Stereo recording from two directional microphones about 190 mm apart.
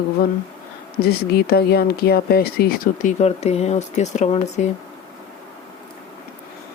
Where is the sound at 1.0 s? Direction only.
55° left (ahead or behind); by 4.4 s 35° left (ahead or behind).